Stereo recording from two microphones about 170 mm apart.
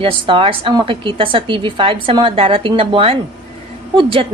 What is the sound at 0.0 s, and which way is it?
A woman's voice, 30° right (ahead or behind).